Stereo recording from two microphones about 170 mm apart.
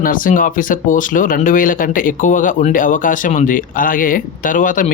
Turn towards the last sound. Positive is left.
turn(degrees=50)  # may be behind; listen again after turning